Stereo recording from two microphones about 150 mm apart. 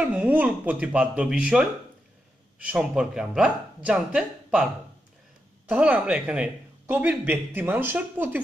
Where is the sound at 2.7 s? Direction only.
5° right (ahead or behind).